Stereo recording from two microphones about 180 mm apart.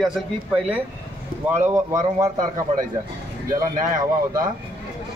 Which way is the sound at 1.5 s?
15° right (ahead or behind).